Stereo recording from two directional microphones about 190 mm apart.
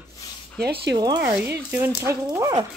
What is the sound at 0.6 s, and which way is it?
Speech, 55° right (ahead or behind).